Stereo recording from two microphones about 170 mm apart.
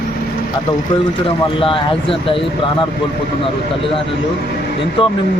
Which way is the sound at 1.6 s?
30° left (ahead or behind).